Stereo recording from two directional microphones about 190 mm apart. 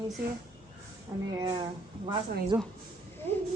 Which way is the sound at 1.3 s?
25° right (ahead or behind).